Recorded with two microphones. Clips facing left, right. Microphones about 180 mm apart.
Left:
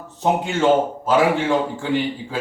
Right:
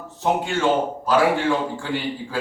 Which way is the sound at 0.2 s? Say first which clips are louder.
Left 2 dB; 20° left (ahead or behind).